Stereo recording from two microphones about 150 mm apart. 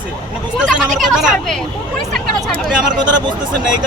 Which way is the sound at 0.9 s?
Centre (ahead or behind).